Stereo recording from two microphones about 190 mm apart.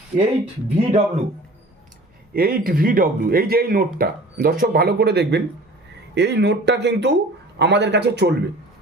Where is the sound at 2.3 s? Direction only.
50° right (ahead or behind).